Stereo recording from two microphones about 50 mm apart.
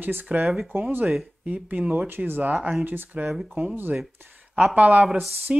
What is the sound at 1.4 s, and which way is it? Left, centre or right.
Speech, right.